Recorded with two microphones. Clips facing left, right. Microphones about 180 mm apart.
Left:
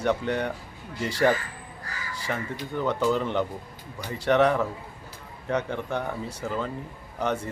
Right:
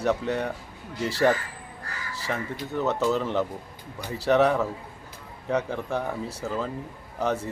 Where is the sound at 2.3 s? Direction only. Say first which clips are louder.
Right 1 dB; 5° right (ahead or behind).